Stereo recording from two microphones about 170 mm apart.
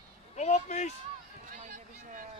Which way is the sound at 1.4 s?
50° right (ahead or behind).